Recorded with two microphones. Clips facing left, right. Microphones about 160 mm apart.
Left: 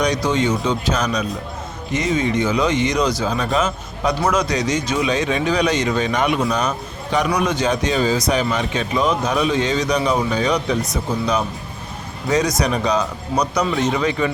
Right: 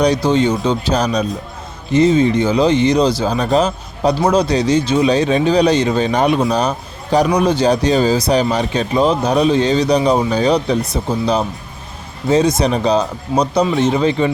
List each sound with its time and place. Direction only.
0.0 s speech: 30° right (ahead or behind)